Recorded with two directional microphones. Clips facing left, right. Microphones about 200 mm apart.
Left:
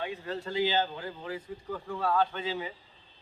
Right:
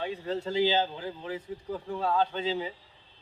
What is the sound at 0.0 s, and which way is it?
A man's voice, 30° right (ahead or behind).